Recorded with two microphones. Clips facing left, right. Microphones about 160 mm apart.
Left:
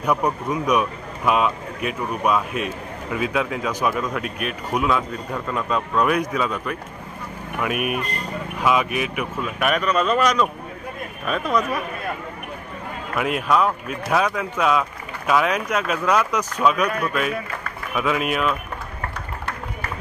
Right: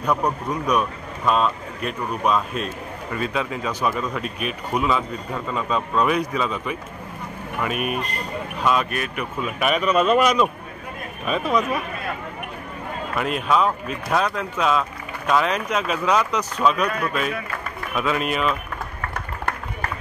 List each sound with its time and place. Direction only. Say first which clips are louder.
0.0 s speech: left 1 dB; 5° left (ahead or behind)
7.7 s speech: left 2 dB; 65° left (ahead or behind)
8.6 s speech: left 2 dB; 10° left (ahead or behind)
9.4 s a man's voice: right 1 dB; centre (ahead or behind)
13.5 s speech: right 1 dB; 5° left (ahead or behind)